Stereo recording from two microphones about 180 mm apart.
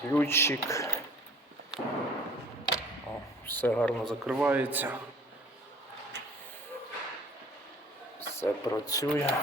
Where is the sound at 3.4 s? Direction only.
10° left (ahead or behind); by 5.0 s 10° right (ahead or behind).